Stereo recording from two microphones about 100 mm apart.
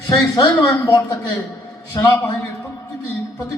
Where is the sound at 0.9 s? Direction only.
45° left (ahead or behind).